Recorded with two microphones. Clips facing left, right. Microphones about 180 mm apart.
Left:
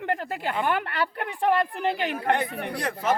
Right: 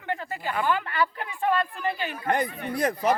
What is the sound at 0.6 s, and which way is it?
Speech, 65° left (ahead or behind).